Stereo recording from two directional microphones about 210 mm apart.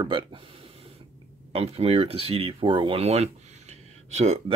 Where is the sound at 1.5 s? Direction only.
30° right (ahead or behind).